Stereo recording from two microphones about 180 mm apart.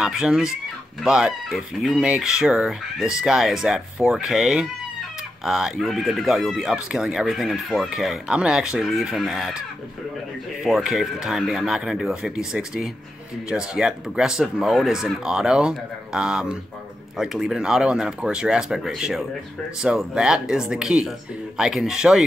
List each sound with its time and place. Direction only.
0.0 s speech: 5° right (ahead or behind)
10.6 s speech: 5° right (ahead or behind)